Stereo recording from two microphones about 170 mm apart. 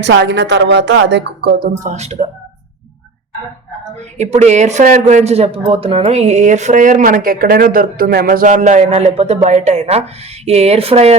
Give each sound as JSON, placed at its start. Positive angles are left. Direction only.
{"t": 0.0, "sound": "speech", "side_deg": -90}
{"t": 4.2, "sound": "speech", "side_deg": -40}